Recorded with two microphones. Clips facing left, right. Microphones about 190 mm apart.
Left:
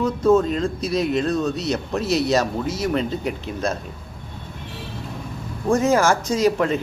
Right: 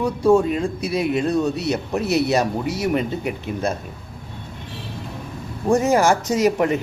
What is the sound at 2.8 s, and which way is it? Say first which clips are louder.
Speech: right 1 dB; 10° right (ahead or behind).